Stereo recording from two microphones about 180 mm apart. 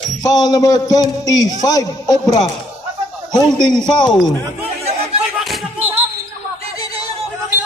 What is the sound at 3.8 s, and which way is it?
Speech, 25° left (ahead or behind).